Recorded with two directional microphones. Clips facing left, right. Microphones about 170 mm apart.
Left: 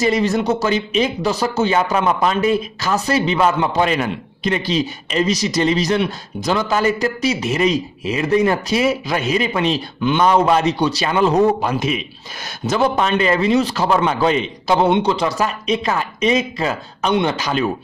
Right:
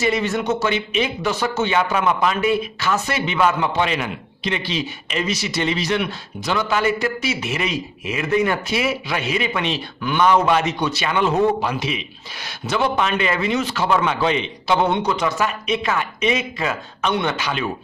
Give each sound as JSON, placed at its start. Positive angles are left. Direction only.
{"t": 0.0, "sound": "speech", "side_deg": 35}
{"t": 17.1, "sound": "a man's voice", "side_deg": 25}
{"t": 17.4, "sound": "speech", "side_deg": 40}